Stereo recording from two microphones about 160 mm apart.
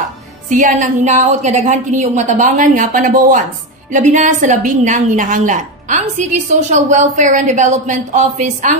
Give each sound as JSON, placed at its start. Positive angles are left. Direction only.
{"t": 0.5, "sound": "a woman's voice", "side_deg": -55}